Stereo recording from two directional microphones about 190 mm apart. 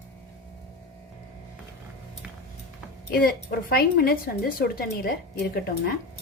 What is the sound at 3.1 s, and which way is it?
Speech, 50° left (ahead or behind).